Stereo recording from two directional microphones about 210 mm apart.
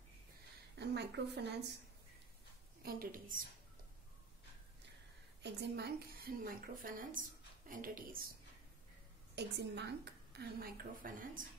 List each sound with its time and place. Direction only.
0.7 s speech: 55° right (ahead or behind)
2.8 s a woman's voice: 45° right (ahead or behind)
5.4 s a woman's voice: 50° right (ahead or behind)
9.3 s a woman's voice: 55° right (ahead or behind)